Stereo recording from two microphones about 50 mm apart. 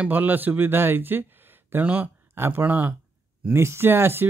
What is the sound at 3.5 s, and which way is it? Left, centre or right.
Speech, right.